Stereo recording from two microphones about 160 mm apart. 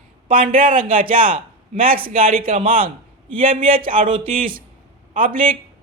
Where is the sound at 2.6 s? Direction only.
35° right (ahead or behind).